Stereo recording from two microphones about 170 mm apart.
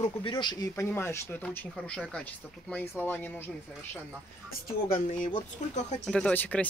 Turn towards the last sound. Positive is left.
turn(degrees=10)  # may be behind; listen again after turning